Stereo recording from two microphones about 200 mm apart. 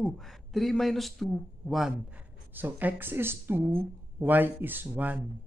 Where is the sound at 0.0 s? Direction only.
Centre (ahead or behind).